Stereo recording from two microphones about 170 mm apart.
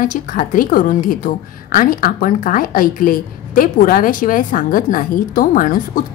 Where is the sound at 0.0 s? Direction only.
55° left (ahead or behind).